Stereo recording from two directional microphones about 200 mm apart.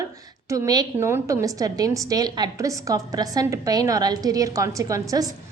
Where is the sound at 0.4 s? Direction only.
15° right (ahead or behind).